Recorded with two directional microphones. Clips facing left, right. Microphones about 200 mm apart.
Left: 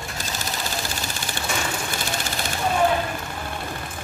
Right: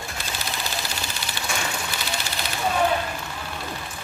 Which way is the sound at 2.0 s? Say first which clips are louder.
Left 2 dB; 50° left (ahead or behind).